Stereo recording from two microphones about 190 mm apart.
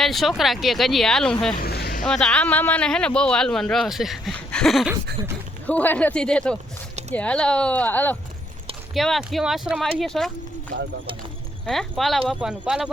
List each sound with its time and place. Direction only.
0.0 s speech: centre (ahead or behind)
1.6 s vehicle: 55° left (ahead or behind)
2.0 s speech: 5° left (ahead or behind)
11.6 s speech: centre (ahead or behind)